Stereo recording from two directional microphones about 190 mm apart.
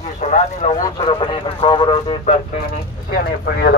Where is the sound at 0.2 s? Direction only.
35° left (ahead or behind).